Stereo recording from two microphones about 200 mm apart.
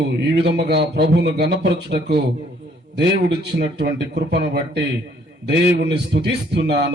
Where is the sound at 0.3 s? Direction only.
55° right (ahead or behind).